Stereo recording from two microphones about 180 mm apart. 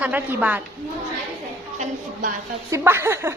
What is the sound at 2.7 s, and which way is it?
Speech, 15° right (ahead or behind).